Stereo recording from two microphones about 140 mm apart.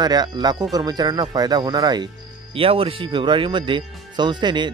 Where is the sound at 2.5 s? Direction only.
40° right (ahead or behind).